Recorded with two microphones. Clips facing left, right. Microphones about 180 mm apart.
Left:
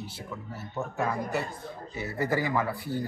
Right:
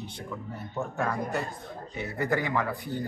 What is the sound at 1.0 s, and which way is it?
Speech, 5° left (ahead or behind).